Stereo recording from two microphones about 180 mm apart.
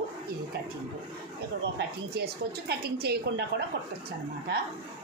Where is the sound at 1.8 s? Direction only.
65° right (ahead or behind).